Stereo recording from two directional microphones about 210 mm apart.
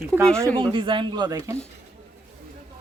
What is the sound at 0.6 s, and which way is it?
Speech, 25° right (ahead or behind).